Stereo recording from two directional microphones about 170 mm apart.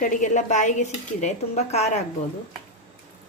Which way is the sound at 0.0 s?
50° left (ahead or behind).